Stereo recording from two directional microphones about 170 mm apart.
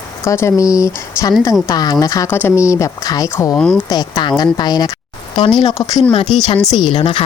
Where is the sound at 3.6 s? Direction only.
5° left (ahead or behind).